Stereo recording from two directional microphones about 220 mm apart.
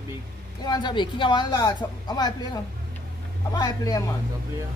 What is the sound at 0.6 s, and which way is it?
Speech, 20° left (ahead or behind).